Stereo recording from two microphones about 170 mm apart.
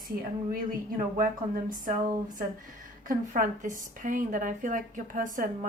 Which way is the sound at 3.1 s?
50° right (ahead or behind).